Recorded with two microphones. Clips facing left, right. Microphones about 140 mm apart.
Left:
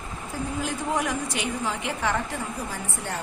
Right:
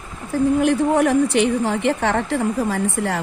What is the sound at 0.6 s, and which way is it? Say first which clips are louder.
A woman's voice: right 7 dB; 65° right (ahead or behind).